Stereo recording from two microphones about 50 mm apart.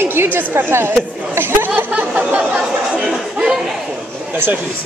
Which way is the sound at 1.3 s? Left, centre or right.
Right.